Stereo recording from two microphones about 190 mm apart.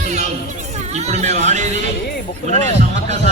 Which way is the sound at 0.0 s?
40° right (ahead or behind).